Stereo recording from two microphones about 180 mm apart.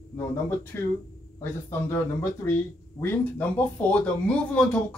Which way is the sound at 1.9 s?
15° left (ahead or behind).